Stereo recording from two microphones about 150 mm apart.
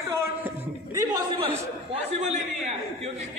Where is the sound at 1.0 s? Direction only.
30° right (ahead or behind).